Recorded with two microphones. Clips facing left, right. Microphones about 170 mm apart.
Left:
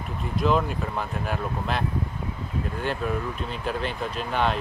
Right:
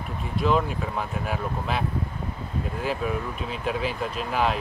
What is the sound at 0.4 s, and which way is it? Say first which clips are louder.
Speech: even; centre (ahead or behind).